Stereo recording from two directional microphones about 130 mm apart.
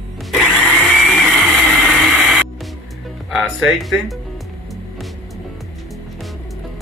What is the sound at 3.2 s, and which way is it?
Speech, centre (ahead or behind).